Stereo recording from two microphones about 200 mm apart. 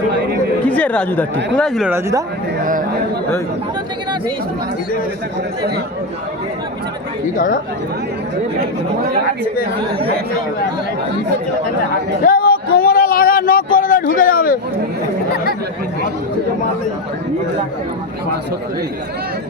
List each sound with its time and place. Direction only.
0.6 s speech: 5° left (ahead or behind)
1.9 s speech: 15° right (ahead or behind)
7.3 s speech: 40° left (ahead or behind)
12.2 s a sound: 45° left (ahead or behind)